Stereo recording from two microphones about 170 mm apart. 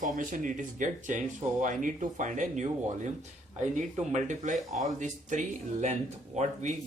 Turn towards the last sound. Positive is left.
turn(degrees=-45)  # may be behind; listen again after turning